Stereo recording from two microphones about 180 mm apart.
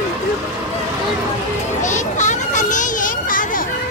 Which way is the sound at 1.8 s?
45° left (ahead or behind).